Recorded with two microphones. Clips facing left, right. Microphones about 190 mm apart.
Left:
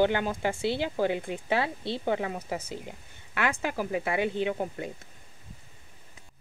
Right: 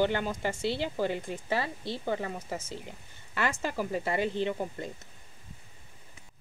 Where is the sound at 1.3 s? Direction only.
60° left (ahead or behind).